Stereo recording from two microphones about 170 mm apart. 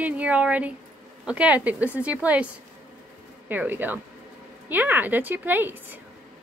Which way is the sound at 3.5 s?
10° right (ahead or behind).